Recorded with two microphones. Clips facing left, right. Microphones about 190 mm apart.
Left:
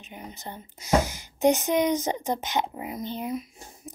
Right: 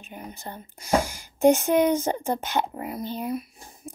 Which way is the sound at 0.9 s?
10° right (ahead or behind).